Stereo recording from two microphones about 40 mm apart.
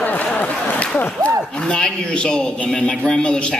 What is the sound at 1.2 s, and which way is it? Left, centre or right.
A man's voice, left.